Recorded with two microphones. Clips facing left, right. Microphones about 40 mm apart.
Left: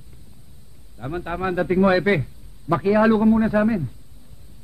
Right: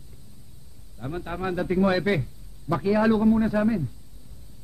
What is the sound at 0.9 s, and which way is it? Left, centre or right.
A man's voice, left.